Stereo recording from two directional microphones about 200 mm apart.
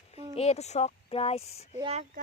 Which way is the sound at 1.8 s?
35° right (ahead or behind).